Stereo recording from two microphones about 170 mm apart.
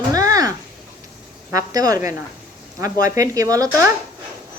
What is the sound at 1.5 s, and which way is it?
A woman's voice, 20° right (ahead or behind).